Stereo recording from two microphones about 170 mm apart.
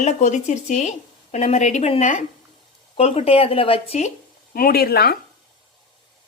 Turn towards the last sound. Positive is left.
turn(degrees=65)  # may be behind; listen again after turning